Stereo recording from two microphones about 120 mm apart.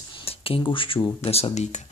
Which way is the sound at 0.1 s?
50° left (ahead or behind).